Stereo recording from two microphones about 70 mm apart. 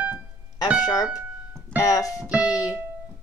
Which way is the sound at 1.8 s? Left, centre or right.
Left.